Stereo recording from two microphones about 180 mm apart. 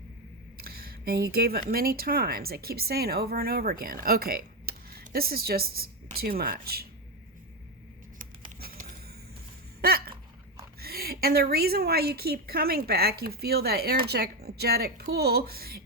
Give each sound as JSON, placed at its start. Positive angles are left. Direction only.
{"t": 0.5, "sound": "a woman's voice", "side_deg": -60}
{"t": 8.4, "sound": "music", "side_deg": -50}
{"t": 9.8, "sound": "a sound", "side_deg": -60}
{"t": 10.8, "sound": "a woman's voice", "side_deg": -60}